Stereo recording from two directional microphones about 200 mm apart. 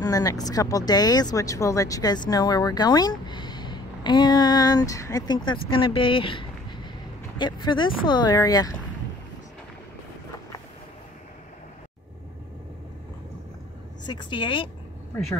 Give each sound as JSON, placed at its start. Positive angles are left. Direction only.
{"t": 0.0, "sound": "speech", "side_deg": 20}
{"t": 14.0, "sound": "speech", "side_deg": 25}